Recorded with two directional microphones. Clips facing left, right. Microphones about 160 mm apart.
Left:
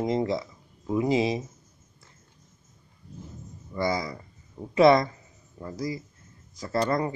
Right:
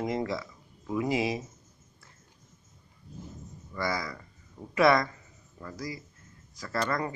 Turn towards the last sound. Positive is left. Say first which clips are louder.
# left 5 dB
turn(degrees=25)  # may be behind; listen again after turning